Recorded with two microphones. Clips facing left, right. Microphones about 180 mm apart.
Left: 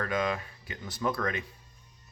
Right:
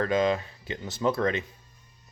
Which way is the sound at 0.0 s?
25° right (ahead or behind).